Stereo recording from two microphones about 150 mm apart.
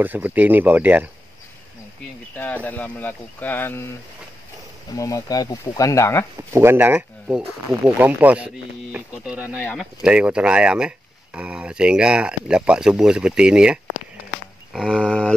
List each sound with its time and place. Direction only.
0.0 s speech: 10° right (ahead or behind)
2.3 s speech: 10° left (ahead or behind)
4.9 s speech: 20° left (ahead or behind)
6.5 s speech: 15° right (ahead or behind)
14.7 s a sound: centre (ahead or behind)